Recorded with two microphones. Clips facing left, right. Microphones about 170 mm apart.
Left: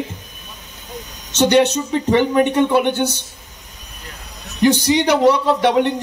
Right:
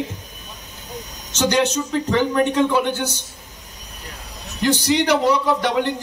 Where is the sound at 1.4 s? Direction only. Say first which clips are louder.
Left 5 dB; 65° left (ahead or behind).